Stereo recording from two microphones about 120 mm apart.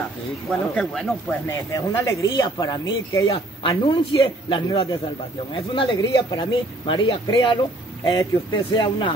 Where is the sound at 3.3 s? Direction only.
40° left (ahead or behind).